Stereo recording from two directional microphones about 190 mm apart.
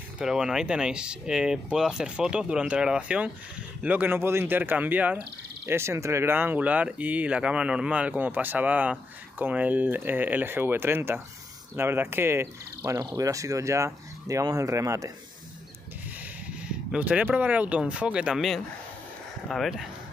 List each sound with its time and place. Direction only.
0.2 s speech: 5° right (ahead or behind)
16.6 s speech: 5° right (ahead or behind)